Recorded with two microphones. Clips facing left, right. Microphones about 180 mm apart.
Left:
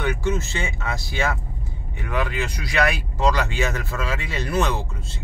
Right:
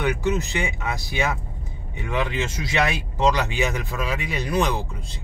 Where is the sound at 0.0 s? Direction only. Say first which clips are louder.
Right 1 dB; 15° right (ahead or behind).